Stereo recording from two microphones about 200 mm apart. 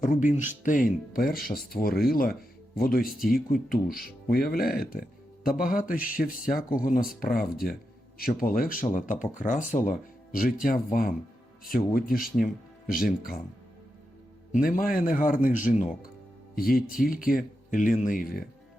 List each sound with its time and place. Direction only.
0.0 s speech: 40° left (ahead or behind)
14.5 s speech: 45° left (ahead or behind)